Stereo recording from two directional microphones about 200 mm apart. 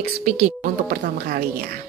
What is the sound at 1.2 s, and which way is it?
Speech, 55° right (ahead or behind).